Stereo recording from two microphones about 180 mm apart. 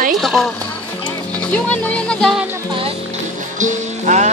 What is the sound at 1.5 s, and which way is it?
Speech, 5° left (ahead or behind).